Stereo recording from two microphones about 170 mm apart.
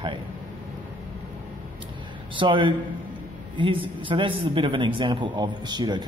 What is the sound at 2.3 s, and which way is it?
A man's voice, 30° right (ahead or behind).